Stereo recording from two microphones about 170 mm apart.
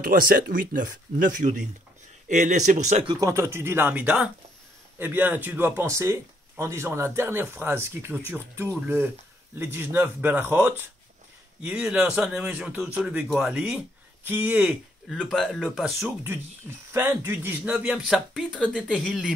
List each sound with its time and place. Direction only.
0.0 s speech: 55° right (ahead or behind)
3.1 s speech: 20° right (ahead or behind)
15.1 s speech: 5° left (ahead or behind)
16.3 s speech: 15° right (ahead or behind)